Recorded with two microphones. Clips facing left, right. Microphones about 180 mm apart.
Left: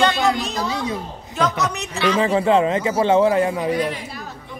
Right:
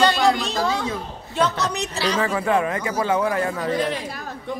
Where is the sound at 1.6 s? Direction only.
35° right (ahead or behind).